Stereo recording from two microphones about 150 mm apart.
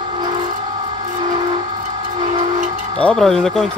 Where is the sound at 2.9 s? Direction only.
5° left (ahead or behind).